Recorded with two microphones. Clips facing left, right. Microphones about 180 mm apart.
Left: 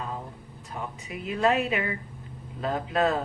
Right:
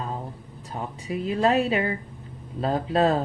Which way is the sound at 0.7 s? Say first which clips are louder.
Right 5 dB; 35° right (ahead or behind).